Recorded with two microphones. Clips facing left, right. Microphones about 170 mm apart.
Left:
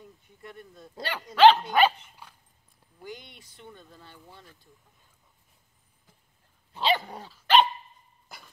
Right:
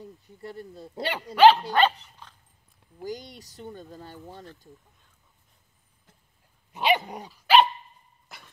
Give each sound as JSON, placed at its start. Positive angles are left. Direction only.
{"t": 0.0, "sound": "speech", "side_deg": -35}
{"t": 1.3, "sound": "speech", "side_deg": -10}
{"t": 1.7, "sound": "dog", "side_deg": 10}
{"t": 3.0, "sound": "speech", "side_deg": -40}
{"t": 6.7, "sound": "dog", "side_deg": -20}
{"t": 8.3, "sound": "cough", "side_deg": 0}